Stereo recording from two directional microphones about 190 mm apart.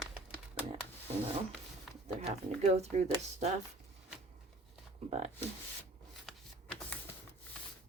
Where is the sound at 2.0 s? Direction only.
35° right (ahead or behind).